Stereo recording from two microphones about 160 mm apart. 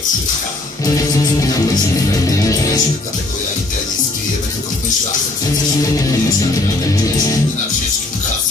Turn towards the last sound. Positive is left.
turn(degrees=20)  # may be behind; listen again after turning